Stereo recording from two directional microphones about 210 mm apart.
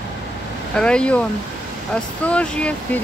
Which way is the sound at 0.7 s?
5° left (ahead or behind).